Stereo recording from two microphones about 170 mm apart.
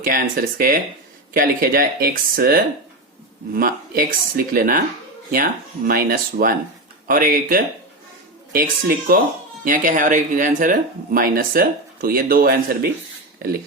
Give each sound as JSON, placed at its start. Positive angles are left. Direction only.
{"t": 0.0, "sound": "speech", "side_deg": -55}